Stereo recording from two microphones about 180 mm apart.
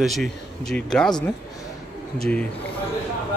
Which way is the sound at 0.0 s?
Centre (ahead or behind).